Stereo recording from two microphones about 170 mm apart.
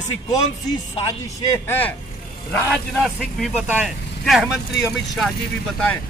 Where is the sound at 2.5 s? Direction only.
5° left (ahead or behind).